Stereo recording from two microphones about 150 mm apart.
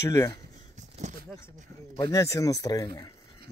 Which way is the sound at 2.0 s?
20° left (ahead or behind).